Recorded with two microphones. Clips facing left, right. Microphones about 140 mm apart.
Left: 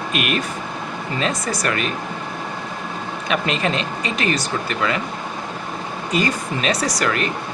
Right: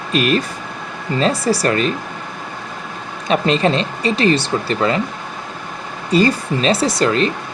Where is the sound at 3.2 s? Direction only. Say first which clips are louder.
Right 6 dB; 30° right (ahead or behind).